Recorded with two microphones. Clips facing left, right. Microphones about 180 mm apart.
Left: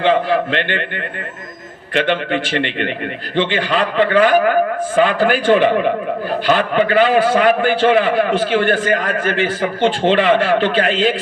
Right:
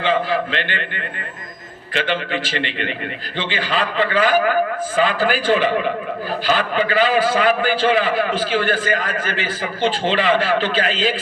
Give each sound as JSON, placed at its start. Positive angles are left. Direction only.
{"t": 0.0, "sound": "a man's voice", "side_deg": 60}
{"t": 1.9, "sound": "a man's voice", "side_deg": 60}